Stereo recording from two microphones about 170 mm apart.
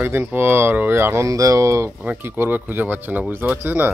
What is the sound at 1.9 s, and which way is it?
Speech, 5° right (ahead or behind).